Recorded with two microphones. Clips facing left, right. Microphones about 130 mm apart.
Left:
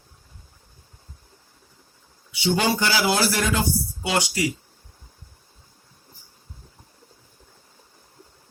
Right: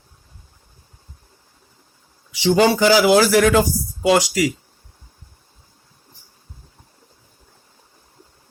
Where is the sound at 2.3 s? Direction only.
90° right.